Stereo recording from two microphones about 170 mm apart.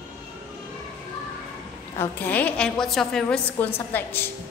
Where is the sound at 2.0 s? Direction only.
10° left (ahead or behind).